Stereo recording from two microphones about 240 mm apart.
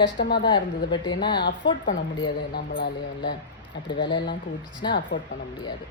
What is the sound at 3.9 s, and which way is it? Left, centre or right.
Speech, centre.